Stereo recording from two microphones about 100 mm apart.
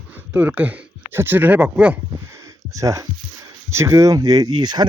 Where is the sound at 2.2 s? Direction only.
30° right (ahead or behind).